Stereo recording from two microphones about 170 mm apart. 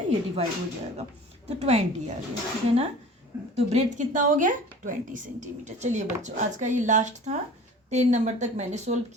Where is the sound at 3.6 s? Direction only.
40° right (ahead or behind).